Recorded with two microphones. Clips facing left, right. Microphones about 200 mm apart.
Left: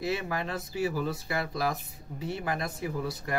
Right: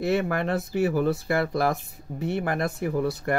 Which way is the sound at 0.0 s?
60° right (ahead or behind).